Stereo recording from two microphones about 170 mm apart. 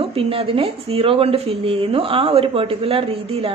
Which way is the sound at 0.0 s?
35° right (ahead or behind).